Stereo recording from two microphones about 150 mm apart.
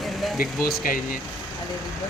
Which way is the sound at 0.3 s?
80° left.